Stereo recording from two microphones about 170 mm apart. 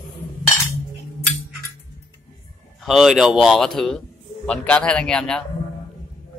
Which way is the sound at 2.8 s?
Centre (ahead or behind).